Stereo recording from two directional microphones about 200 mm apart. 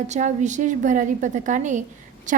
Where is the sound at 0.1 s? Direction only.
35° right (ahead or behind).